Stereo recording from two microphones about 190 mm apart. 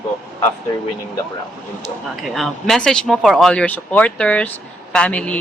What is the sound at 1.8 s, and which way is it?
A man's voice, centre (ahead or behind).